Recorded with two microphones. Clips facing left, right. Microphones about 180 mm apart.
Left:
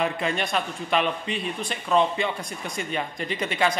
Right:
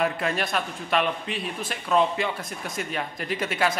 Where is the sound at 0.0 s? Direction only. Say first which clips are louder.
Even; centre (ahead or behind).